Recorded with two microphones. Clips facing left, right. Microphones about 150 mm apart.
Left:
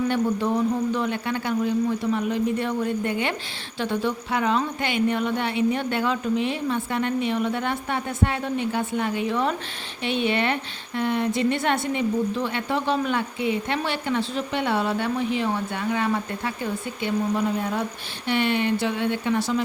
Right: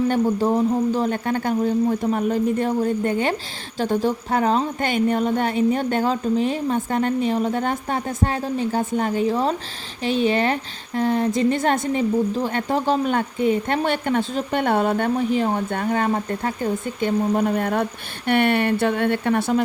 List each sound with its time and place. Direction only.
0.1 s a woman's voice: 40° right (ahead or behind); by 19.6 s 55° right (ahead or behind)